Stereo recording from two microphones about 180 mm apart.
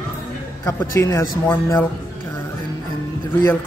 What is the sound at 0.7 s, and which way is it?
Speech, 15° left (ahead or behind).